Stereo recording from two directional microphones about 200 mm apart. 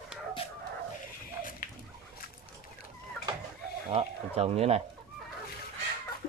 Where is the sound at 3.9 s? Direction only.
30° right (ahead or behind).